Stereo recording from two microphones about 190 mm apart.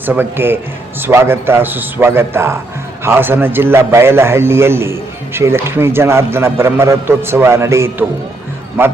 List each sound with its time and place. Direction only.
0.0 s a man's voice: 10° right (ahead or behind)